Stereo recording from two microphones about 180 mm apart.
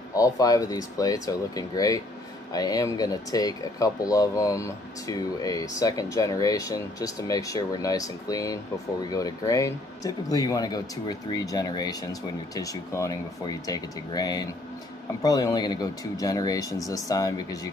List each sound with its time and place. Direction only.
0.1 s speech: 20° left (ahead or behind)